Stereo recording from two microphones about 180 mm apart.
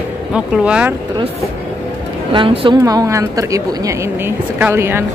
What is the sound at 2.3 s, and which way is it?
A woman's voice, 30° right (ahead or behind).